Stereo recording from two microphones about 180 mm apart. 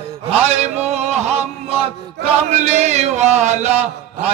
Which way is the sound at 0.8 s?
40° right (ahead or behind).